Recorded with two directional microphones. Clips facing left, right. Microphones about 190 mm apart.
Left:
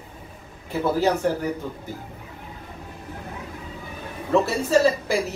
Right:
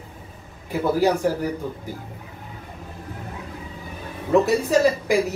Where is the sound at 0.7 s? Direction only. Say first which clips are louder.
Right 2 dB; 10° right (ahead or behind).